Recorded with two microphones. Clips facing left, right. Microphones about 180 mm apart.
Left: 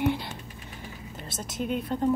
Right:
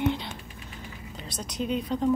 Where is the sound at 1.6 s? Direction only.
55° left (ahead or behind).